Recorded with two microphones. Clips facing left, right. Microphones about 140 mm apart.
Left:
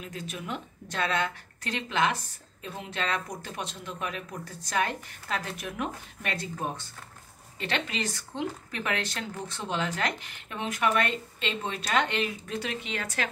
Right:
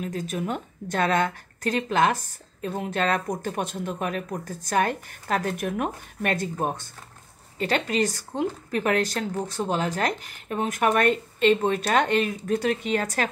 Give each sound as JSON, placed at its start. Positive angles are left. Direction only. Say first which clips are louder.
{"t": 0.0, "sound": "speech", "louder": "right 9 dB", "side_deg": -45}